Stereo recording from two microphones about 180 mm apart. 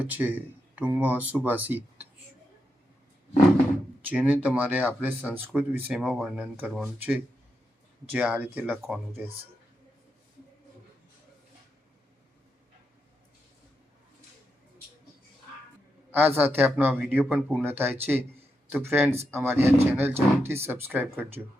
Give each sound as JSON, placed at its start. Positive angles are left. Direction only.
{"t": 0.0, "sound": "speech", "side_deg": -10}
{"t": 4.1, "sound": "speech", "side_deg": -10}
{"t": 16.1, "sound": "speech", "side_deg": -10}